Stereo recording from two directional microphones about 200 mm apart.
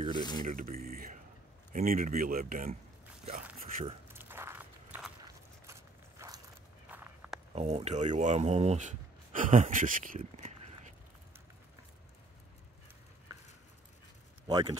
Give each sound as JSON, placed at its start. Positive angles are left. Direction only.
{"t": 0.1, "sound": "speech", "side_deg": 20}
{"t": 0.4, "sound": "speech", "side_deg": -40}
{"t": 3.7, "sound": "speech", "side_deg": -45}
{"t": 4.1, "sound": "walk", "side_deg": -10}
{"t": 6.9, "sound": "walk", "side_deg": -5}
{"t": 7.5, "sound": "speech", "side_deg": -30}
{"t": 14.5, "sound": "speech", "side_deg": -20}